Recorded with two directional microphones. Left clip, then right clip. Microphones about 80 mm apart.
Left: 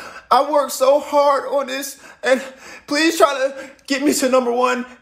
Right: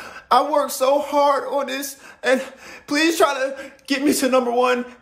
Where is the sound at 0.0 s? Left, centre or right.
Right.